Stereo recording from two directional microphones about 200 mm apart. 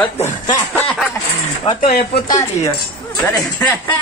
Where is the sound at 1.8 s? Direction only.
50° left (ahead or behind).